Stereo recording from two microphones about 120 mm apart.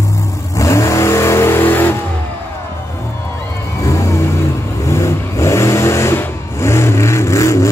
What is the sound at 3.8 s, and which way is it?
Vehicle, 25° left (ahead or behind).